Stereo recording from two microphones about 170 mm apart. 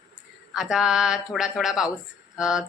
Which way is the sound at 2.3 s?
5° right (ahead or behind).